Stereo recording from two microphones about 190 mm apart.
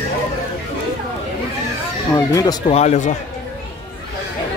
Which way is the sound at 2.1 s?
20° left (ahead or behind).